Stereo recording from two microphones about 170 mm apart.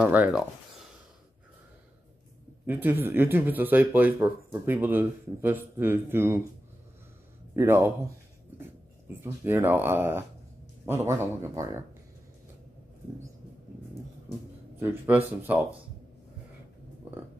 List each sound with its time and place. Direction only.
0.0 s speech: 10° right (ahead or behind)
2.6 s speech: 10° right (ahead or behind)
7.5 s speech: 15° right (ahead or behind)
14.8 s speech: 15° right (ahead or behind)